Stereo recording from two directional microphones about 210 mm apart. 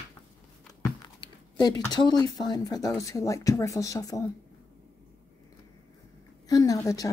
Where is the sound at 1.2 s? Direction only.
20° left (ahead or behind).